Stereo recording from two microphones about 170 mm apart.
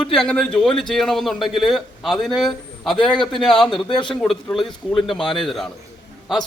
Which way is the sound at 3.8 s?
25° left (ahead or behind).